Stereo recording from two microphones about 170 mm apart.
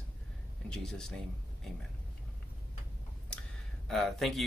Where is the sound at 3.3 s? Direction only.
5° left (ahead or behind).